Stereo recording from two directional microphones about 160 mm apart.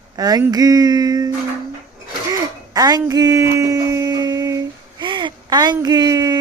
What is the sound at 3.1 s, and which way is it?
Speech, 20° right (ahead or behind).